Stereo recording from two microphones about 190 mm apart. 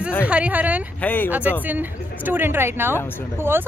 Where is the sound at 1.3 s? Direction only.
10° right (ahead or behind).